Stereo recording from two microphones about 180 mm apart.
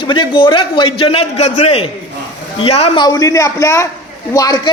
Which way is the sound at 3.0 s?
20° left (ahead or behind).